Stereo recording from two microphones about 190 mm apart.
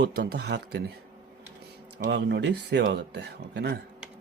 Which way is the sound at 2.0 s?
65° right (ahead or behind).